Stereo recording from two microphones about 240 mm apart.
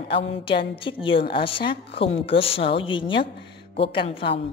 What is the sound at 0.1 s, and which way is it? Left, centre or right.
A woman's voice, left.